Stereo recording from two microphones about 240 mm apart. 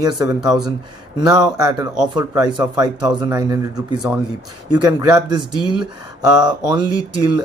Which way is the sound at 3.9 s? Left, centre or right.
Centre.